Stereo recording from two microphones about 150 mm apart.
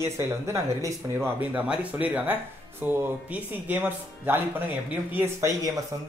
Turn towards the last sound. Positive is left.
turn(degrees=-15)  # may be behind; listen again after turning